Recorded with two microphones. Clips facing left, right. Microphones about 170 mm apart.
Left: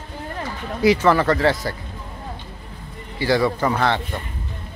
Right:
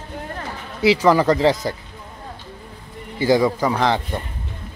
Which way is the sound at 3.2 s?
15° right (ahead or behind).